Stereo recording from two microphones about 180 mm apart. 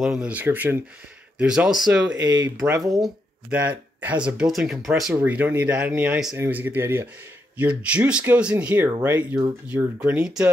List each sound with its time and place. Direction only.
0.0 s speech: 5° right (ahead or behind)
2.2 s speech: 20° right (ahead or behind)
2.8 s speech: centre (ahead or behind)